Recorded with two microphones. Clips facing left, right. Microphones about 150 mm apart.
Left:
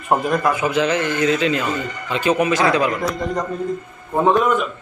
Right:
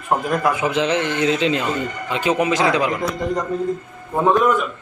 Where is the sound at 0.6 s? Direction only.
25° right (ahead or behind).